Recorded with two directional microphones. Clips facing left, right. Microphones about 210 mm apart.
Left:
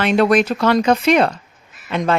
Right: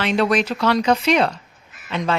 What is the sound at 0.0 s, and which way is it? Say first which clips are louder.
A woman's voice: left 4 dB; 50° left (ahead or behind).